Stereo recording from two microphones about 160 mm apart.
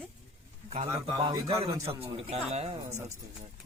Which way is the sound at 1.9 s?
35° right (ahead or behind).